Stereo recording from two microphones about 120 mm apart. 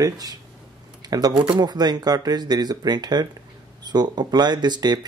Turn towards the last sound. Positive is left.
turn(degrees=-35)  # may be behind; listen again after turning